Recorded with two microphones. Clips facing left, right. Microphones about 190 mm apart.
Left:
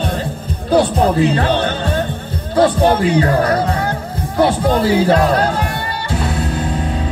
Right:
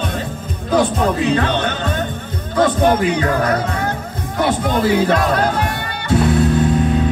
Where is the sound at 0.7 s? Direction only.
35° left (ahead or behind).